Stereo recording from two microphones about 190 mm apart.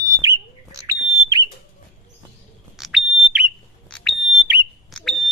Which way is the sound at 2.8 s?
Centre (ahead or behind).